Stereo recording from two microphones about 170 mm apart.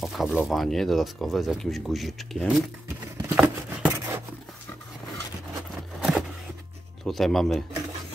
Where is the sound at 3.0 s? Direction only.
20° right (ahead or behind).